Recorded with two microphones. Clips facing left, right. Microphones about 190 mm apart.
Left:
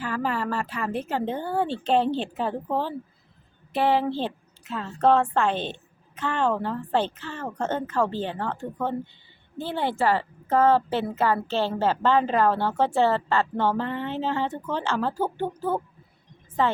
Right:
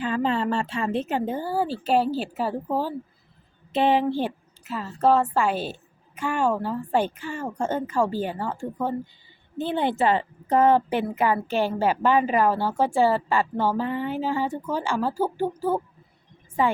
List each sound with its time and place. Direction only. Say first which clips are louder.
0.0 s a woman's voice: right 4 dB; 20° right (ahead or behind)
1.2 s a woman's voice: right 1 dB; 5° right (ahead or behind)
3.7 s a woman's voice: right 2 dB; 20° right (ahead or behind)
4.1 s a woman's voice: right 2 dB; 10° right (ahead or behind)